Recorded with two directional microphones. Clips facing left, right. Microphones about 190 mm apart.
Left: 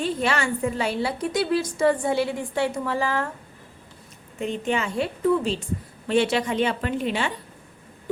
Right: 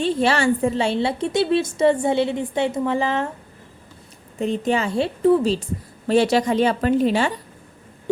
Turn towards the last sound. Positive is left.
turn(degrees=-40)  # may be behind; listen again after turning